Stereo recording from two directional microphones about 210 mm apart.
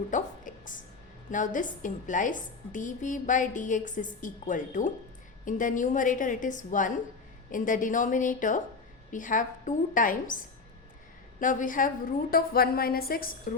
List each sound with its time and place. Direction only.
0.1 s a sound: 40° left (ahead or behind)
1.3 s a woman's voice: 40° left (ahead or behind)
11.3 s a woman's voice: 40° left (ahead or behind)